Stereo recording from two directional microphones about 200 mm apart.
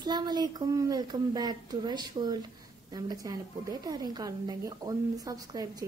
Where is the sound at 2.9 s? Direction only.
20° right (ahead or behind).